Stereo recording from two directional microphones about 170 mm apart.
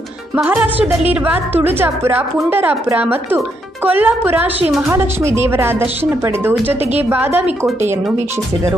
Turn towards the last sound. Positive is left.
turn(degrees=-10)  # may be behind; listen again after turning